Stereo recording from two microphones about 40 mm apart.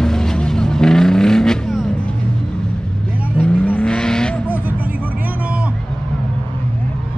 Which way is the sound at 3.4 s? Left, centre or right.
Right.